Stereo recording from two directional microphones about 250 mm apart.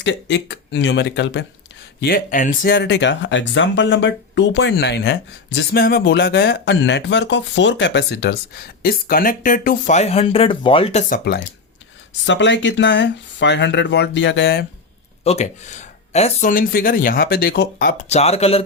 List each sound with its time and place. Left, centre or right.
0.0 s speech: left
12.2 s speech: left
15.2 s speech: left
18.1 s speech: left